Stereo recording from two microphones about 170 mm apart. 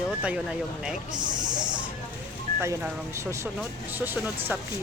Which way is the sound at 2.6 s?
15° right (ahead or behind).